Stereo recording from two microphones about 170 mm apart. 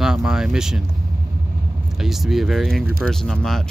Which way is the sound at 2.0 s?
Centre (ahead or behind).